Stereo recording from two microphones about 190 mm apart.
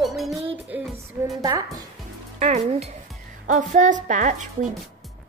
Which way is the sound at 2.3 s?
35° right (ahead or behind).